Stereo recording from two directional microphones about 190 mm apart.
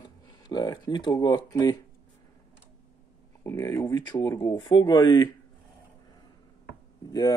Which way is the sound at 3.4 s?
15° left (ahead or behind).